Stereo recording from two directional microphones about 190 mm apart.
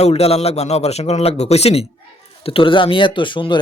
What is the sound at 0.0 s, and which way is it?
A man's voice, 30° left (ahead or behind).